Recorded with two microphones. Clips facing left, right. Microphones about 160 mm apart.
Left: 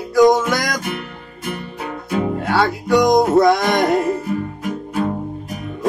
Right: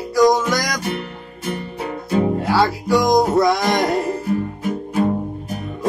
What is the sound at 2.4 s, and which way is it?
Music, centre (ahead or behind).